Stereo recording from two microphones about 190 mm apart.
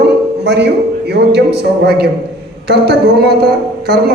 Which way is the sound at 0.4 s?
60° right (ahead or behind).